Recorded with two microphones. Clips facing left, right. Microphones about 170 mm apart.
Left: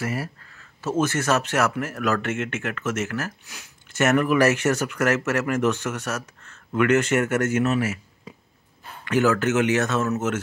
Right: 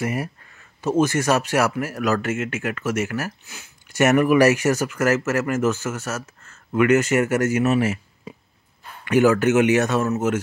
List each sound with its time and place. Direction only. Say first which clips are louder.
0.0 s speech: right 3 dB; 20° right (ahead or behind)
7.8 s a sound: right 4 dB; 30° right (ahead or behind)
9.0 s speech: right 4 dB; 15° right (ahead or behind)